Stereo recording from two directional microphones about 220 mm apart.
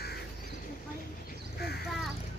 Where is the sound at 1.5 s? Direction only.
45° left (ahead or behind).